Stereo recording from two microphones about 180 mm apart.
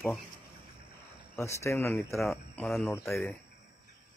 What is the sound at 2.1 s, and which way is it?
Mantra, centre (ahead or behind).